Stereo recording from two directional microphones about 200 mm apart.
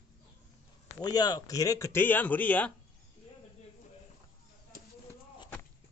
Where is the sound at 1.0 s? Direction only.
20° left (ahead or behind).